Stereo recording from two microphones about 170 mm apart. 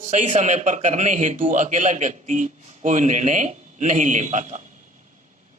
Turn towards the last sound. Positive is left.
turn(degrees=-45)  # may be behind; listen again after turning